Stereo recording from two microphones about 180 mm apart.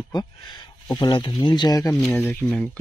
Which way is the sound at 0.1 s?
20° left (ahead or behind).